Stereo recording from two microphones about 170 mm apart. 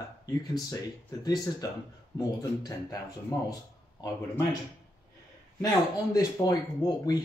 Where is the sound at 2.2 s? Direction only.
20° left (ahead or behind).